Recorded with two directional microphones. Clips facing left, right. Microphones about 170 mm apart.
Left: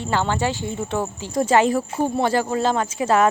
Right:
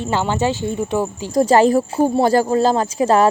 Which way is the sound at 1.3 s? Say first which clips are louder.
Right 5 dB; 35° right (ahead or behind).